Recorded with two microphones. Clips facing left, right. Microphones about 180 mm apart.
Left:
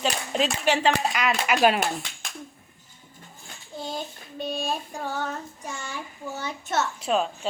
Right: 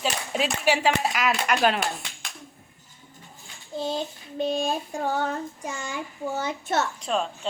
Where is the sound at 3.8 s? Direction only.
25° right (ahead or behind).